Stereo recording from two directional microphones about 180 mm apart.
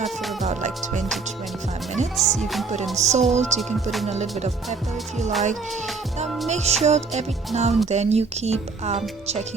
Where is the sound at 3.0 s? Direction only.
40° right (ahead or behind).